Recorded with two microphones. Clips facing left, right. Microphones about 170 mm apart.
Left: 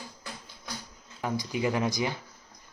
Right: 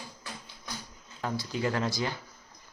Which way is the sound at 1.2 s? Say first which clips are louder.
Left 2 dB; 15° left (ahead or behind).